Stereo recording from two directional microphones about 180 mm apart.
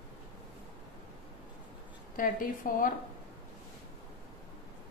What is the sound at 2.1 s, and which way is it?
Speech, 50° left (ahead or behind).